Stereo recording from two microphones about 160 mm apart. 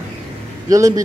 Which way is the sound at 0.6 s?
20° right (ahead or behind).